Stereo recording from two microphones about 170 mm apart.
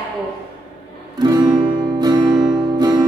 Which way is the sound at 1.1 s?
25° right (ahead or behind).